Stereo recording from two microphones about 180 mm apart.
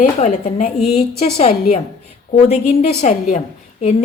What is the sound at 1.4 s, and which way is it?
A woman's voice, 35° left (ahead or behind).